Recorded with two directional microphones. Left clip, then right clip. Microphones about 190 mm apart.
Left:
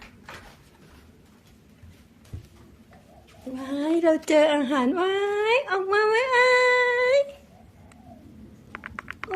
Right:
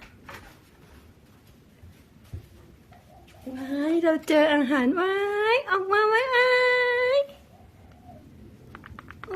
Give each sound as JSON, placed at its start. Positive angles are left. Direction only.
{"t": 3.8, "sound": "speech", "side_deg": -5}